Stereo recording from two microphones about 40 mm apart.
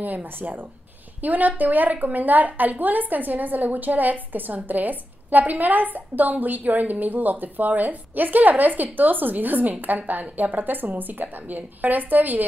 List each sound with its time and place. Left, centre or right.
0.0 s a woman's voice: right